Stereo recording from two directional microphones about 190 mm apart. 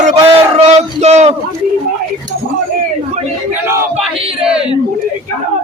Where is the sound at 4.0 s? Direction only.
5° right (ahead or behind).